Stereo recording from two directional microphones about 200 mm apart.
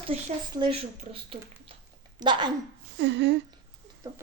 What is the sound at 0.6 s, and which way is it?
Speech, 25° right (ahead or behind).